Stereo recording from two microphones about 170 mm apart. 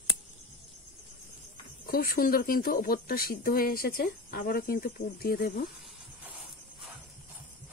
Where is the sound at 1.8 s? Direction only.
60° left (ahead or behind).